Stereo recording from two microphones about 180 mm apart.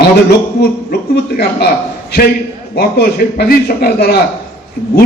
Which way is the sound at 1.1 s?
60° left (ahead or behind).